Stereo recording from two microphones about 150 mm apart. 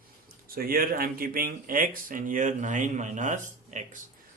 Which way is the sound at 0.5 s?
80° right.